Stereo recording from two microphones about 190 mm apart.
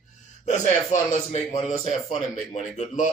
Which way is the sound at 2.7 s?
40° left (ahead or behind).